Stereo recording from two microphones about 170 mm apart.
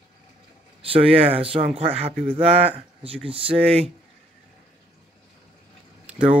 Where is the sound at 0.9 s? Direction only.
35° right (ahead or behind).